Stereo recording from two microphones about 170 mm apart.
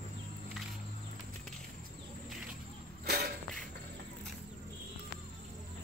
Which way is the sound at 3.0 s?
70° right (ahead or behind).